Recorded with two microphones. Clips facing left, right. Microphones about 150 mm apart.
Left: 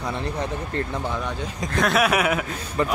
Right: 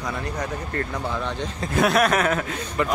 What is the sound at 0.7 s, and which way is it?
Speech, 15° left (ahead or behind).